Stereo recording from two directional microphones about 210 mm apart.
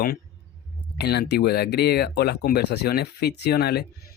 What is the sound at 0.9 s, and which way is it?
Speech, 50° left (ahead or behind).